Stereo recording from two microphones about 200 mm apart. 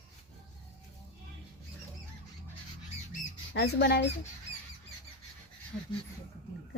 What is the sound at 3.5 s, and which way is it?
Speech, 60° left (ahead or behind).